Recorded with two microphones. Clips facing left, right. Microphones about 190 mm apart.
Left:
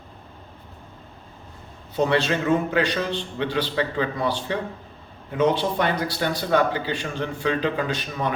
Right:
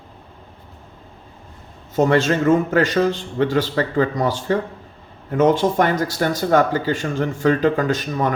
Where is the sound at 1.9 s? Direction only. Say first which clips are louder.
Right 5 dB; 45° right (ahead or behind).